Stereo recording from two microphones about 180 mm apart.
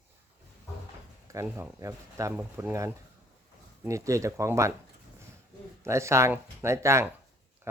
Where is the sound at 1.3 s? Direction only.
15° right (ahead or behind).